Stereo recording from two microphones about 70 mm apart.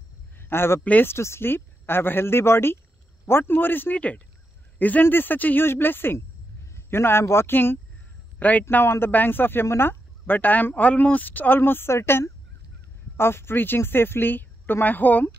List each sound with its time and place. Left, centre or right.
0.4 s a man's voice: left
0.8 s speech: left
1.1 s speech: left